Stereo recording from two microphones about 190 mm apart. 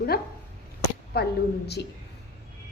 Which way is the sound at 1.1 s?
60° left (ahead or behind).